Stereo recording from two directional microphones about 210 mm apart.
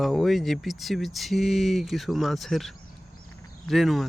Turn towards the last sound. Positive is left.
turn(degrees=0)  # may be behind; listen again after turning